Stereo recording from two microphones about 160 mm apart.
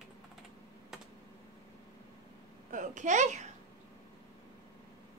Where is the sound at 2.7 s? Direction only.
50° right (ahead or behind).